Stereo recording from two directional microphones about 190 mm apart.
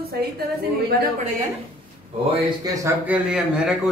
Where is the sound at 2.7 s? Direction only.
10° right (ahead or behind).